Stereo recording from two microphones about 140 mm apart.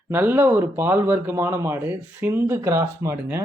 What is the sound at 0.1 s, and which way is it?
A man's voice, 15° right (ahead or behind).